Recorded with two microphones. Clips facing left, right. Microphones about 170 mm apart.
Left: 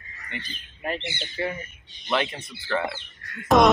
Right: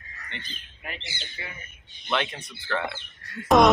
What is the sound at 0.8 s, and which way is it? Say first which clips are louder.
Speech: left 9 dB; 35° left (ahead or behind).